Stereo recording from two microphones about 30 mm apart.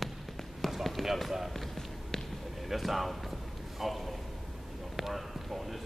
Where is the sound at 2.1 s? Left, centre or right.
Centre.